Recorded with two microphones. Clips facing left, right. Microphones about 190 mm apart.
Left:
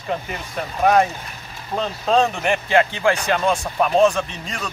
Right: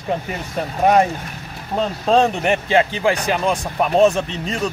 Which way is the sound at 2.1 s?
20° right (ahead or behind).